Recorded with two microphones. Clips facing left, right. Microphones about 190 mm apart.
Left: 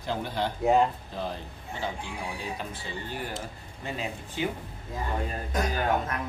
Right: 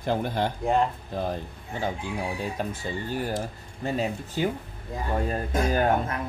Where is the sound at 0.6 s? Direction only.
Centre (ahead or behind).